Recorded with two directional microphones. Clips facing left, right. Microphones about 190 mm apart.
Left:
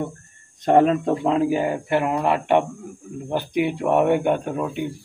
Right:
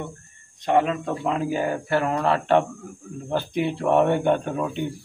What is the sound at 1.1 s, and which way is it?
Speech, 25° left (ahead or behind).